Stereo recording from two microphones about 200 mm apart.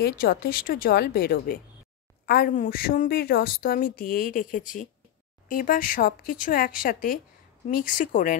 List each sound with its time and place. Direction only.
0.0 s a woman's voice: 50° left (ahead or behind)